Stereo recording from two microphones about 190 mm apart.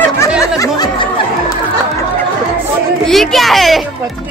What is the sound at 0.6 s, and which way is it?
Music, 20° left (ahead or behind).